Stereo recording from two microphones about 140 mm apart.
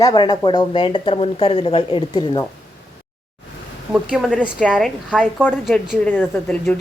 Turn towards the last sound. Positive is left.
turn(degrees=10)  # may be behind; listen again after turning